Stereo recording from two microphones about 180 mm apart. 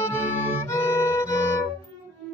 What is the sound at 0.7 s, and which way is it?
Violin, 15° left (ahead or behind).